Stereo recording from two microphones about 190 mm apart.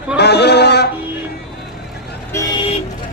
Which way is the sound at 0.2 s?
60° left (ahead or behind).